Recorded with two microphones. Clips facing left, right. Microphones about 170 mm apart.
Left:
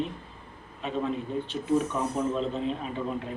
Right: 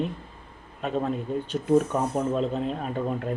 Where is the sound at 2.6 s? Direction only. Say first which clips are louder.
Right 2 dB; 50° right (ahead or behind).